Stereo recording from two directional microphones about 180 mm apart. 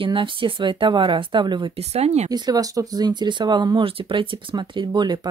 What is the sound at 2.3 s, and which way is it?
Speech, 20° right (ahead or behind).